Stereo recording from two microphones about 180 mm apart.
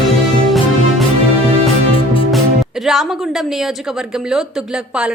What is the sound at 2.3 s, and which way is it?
Speech, centre (ahead or behind).